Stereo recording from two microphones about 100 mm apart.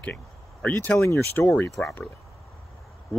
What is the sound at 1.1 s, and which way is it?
Speech, 25° left (ahead or behind).